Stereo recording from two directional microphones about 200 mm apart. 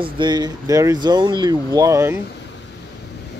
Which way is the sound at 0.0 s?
20° right (ahead or behind).